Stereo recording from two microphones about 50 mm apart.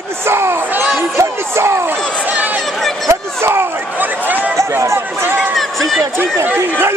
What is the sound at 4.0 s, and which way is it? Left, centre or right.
Speech, right.